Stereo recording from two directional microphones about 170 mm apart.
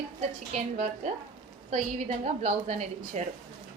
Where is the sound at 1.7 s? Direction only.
45° right (ahead or behind).